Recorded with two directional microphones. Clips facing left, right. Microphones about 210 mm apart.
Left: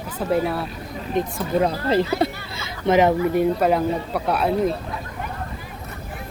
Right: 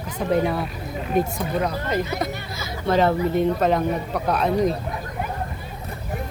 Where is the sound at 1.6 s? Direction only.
30° left (ahead or behind).